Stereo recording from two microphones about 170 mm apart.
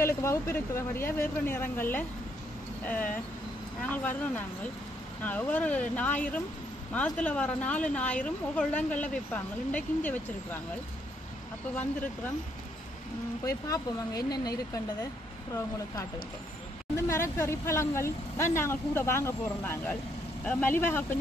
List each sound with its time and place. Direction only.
0.0 s speech: 15° left (ahead or behind)
5.2 s speech: 10° left (ahead or behind)
13.5 s speech: 20° left (ahead or behind)
16.9 s speech: 15° left (ahead or behind)